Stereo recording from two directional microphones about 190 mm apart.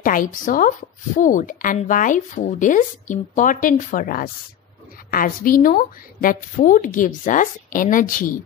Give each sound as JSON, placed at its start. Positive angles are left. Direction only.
{"t": 0.0, "sound": "speech", "side_deg": 45}